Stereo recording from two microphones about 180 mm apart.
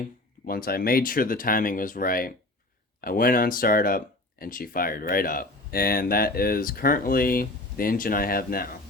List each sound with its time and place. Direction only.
0.4 s speech: 55° left (ahead or behind)